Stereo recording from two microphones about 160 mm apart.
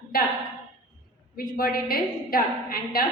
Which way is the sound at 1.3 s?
65° left (ahead or behind).